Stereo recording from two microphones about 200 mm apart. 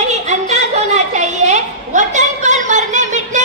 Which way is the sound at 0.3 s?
35° right (ahead or behind).